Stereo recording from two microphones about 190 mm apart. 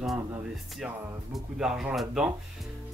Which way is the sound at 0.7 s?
5° right (ahead or behind).